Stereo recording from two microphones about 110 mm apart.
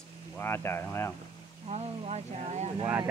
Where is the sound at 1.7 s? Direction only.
70° right (ahead or behind).